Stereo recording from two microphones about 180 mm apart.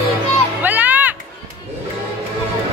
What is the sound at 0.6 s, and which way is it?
Music, 10° right (ahead or behind).